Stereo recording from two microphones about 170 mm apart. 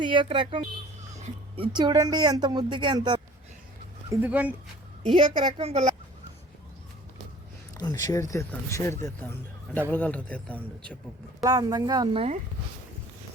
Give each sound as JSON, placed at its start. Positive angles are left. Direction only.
{"t": 0.0, "sound": "speech", "side_deg": -30}
{"t": 4.1, "sound": "speech", "side_deg": -10}
{"t": 5.1, "sound": "a woman's voice", "side_deg": -30}
{"t": 7.8, "sound": "a man's voice", "side_deg": 20}
{"t": 11.4, "sound": "speech", "side_deg": -25}